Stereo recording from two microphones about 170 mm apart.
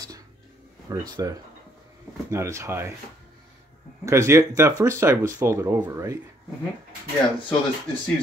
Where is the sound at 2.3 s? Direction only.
15° right (ahead or behind).